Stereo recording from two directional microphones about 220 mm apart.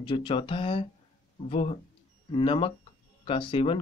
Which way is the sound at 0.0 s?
25° left (ahead or behind).